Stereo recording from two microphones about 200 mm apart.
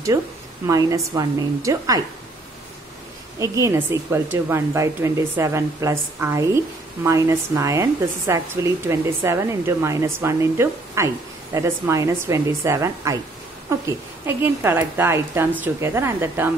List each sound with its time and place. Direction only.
0.1 s speech: 10° right (ahead or behind)
3.3 s speech: 15° right (ahead or behind)
14.2 s speech: 10° right (ahead or behind)